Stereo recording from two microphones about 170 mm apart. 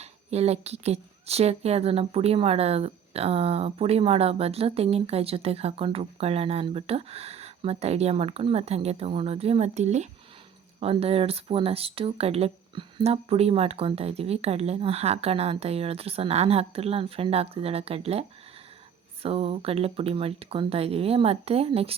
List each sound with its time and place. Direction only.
0.0 s speech: 40° right (ahead or behind)